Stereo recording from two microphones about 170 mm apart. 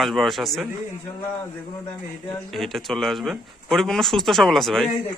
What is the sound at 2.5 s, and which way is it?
Speech, centre (ahead or behind).